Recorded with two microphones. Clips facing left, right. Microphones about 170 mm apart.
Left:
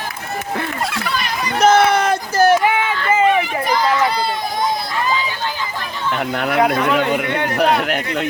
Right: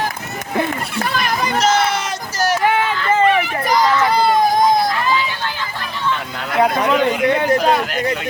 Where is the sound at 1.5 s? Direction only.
55° left (ahead or behind).